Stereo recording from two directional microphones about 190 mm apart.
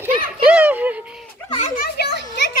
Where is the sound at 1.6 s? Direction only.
50° left (ahead or behind).